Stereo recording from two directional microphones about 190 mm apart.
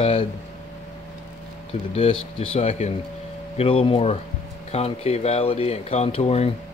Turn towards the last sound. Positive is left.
turn(degrees=35)  # may be behind; listen again after turning